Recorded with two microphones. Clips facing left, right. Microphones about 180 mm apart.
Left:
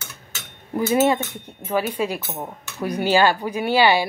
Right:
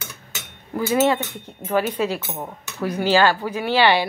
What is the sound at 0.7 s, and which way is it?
Speech, 20° left (ahead or behind).